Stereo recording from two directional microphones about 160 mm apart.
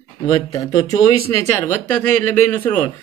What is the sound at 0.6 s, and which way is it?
Speech, 25° left (ahead or behind).